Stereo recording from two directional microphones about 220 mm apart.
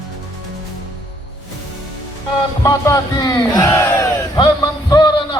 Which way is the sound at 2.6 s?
15° left (ahead or behind).